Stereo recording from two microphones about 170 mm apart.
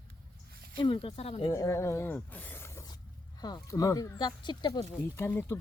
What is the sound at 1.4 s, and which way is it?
Speech, 20° left (ahead or behind).